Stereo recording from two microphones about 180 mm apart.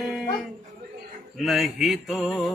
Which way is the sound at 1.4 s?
Centre (ahead or behind).